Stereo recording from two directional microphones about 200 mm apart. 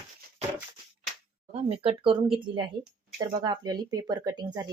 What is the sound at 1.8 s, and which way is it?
Speech, 30° right (ahead or behind).